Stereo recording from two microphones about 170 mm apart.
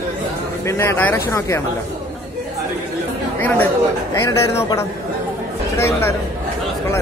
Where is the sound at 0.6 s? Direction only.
15° left (ahead or behind).